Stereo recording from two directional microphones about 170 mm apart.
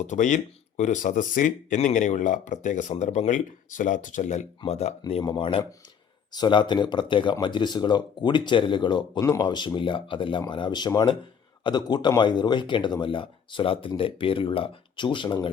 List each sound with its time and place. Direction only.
0.1 s speech: 45° left (ahead or behind); by 15.4 s 30° left (ahead or behind)